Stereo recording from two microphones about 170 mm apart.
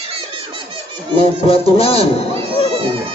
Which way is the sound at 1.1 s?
35° left (ahead or behind).